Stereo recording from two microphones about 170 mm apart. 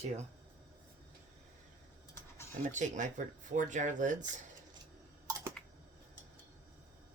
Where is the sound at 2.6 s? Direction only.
45° right (ahead or behind).